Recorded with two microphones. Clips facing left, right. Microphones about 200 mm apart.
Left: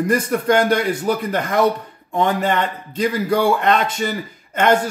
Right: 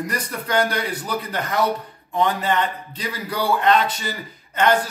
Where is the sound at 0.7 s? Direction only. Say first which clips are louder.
Left 8 dB; 50° left (ahead or behind).